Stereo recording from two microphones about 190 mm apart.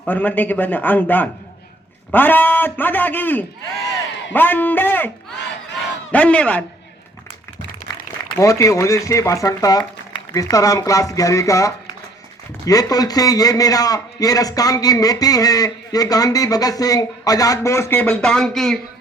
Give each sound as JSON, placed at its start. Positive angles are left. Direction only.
{"t": 0.0, "sound": "speech", "side_deg": 10}
{"t": 8.4, "sound": "a man's voice", "side_deg": 15}